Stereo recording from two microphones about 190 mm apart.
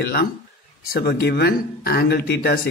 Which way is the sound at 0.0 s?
55° left (ahead or behind).